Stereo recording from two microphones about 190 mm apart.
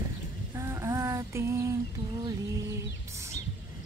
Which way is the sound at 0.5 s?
15° right (ahead or behind).